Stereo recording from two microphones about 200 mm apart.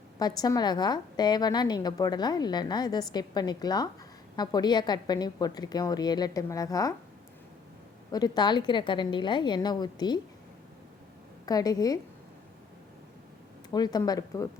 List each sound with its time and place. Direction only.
0.2 s a woman's voice: 20° left (ahead or behind)
8.1 s a woman's voice: 20° left (ahead or behind)
11.4 s a woman's voice: 20° left (ahead or behind)
13.7 s a woman's voice: 20° left (ahead or behind)